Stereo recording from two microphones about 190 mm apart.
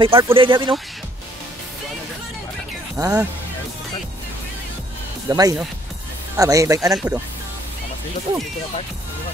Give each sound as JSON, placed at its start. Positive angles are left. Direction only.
{"t": 0.0, "sound": "speech", "side_deg": -25}
{"t": 3.0, "sound": "speech", "side_deg": -15}
{"t": 5.3, "sound": "speech", "side_deg": -20}
{"t": 6.9, "sound": "speech", "side_deg": 0}